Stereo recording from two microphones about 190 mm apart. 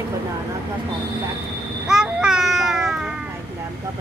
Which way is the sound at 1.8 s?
5° right (ahead or behind).